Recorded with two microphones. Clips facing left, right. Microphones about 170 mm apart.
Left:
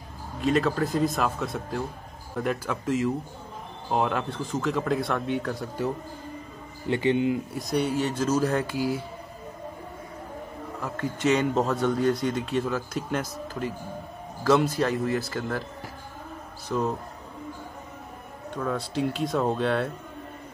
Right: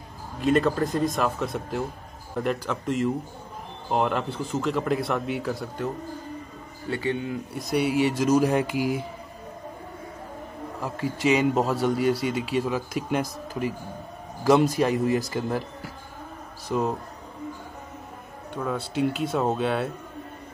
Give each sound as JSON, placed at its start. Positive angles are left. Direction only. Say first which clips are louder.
{"t": 0.4, "sound": "speech", "louder": "right 2 dB", "side_deg": 0}
{"t": 6.9, "sound": "speech", "louder": "left 5 dB", "side_deg": 20}
{"t": 7.5, "sound": "a man's voice", "louder": "right 2 dB", "side_deg": -5}
{"t": 10.8, "sound": "a man's voice", "louder": "right 1 dB", "side_deg": -10}
{"t": 16.6, "sound": "a man's voice", "louder": "right 1 dB", "side_deg": -10}
{"t": 18.6, "sound": "speech", "louder": "right 1 dB", "side_deg": -5}